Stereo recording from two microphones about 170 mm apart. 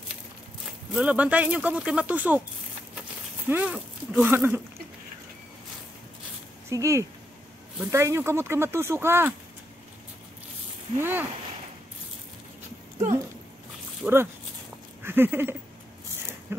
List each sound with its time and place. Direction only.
0.9 s speech: 5° right (ahead or behind)
3.4 s speech: 10° right (ahead or behind)
6.7 s speech: 20° right (ahead or behind)
11.0 s speech: 15° right (ahead or behind)
14.0 s speech: 10° right (ahead or behind)
15.0 s a sound: 15° right (ahead or behind)